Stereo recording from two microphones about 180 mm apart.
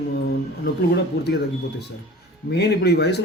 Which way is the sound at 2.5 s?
65° left (ahead or behind).